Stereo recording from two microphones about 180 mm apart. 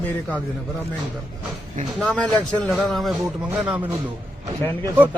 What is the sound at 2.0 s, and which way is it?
Speech, centre (ahead or behind).